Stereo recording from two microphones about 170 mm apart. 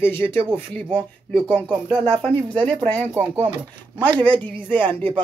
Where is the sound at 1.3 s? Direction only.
25° right (ahead or behind).